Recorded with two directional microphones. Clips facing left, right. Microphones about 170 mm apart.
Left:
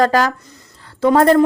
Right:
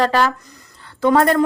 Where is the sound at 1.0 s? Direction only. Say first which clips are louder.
Left 3 dB; 25° left (ahead or behind).